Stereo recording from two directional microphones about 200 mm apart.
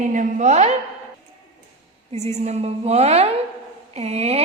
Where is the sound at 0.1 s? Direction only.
40° right (ahead or behind).